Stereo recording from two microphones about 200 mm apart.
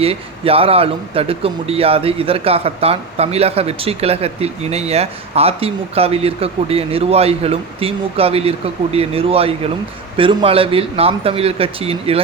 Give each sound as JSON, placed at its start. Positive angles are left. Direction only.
{"t": 0.0, "sound": "speech", "side_deg": -30}